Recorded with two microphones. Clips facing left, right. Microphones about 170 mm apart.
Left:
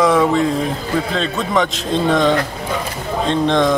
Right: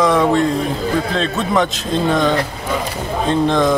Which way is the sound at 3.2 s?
5° right (ahead or behind).